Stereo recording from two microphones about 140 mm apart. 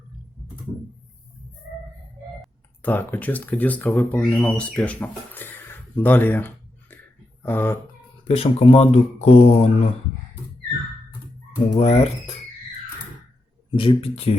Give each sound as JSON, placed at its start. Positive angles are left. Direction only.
{"t": 2.8, "sound": "speech", "side_deg": 10}
{"t": 8.4, "sound": "speech", "side_deg": 45}
{"t": 11.6, "sound": "speech", "side_deg": 55}
{"t": 13.7, "sound": "speech", "side_deg": 40}